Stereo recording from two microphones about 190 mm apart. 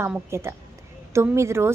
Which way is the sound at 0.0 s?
15° right (ahead or behind).